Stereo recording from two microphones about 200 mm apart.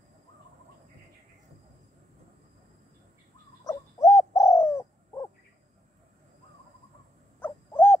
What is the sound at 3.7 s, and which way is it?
Owl, 15° left (ahead or behind).